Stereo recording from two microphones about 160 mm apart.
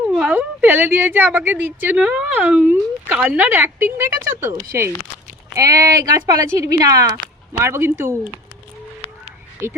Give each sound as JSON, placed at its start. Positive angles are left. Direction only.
{"t": 0.1, "sound": "a sound", "side_deg": 0}
{"t": 0.3, "sound": "a woman's voice", "side_deg": -10}
{"t": 5.5, "sound": "a woman's voice", "side_deg": -20}